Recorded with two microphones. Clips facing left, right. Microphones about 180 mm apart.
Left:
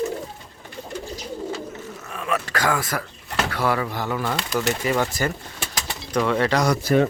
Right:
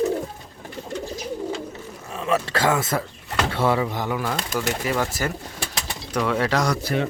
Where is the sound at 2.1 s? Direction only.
25° right (ahead or behind); by 6.7 s 5° right (ahead or behind).